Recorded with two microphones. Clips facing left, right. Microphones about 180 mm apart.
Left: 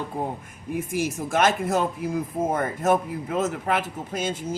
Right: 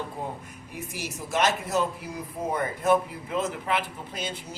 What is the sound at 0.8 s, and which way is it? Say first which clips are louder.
Speech: left 9 dB; 50° left (ahead or behind).